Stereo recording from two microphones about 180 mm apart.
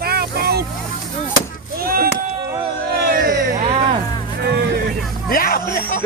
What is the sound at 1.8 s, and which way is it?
Speech, 55° right (ahead or behind).